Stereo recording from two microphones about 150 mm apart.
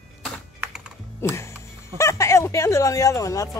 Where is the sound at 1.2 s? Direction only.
15° left (ahead or behind).